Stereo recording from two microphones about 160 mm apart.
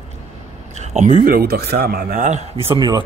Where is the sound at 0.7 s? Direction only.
45° right (ahead or behind); by 2.2 s 75° right (ahead or behind).